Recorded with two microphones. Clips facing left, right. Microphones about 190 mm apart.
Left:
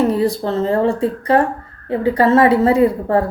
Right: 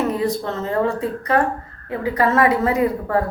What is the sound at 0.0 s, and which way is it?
Speech, 30° left (ahead or behind).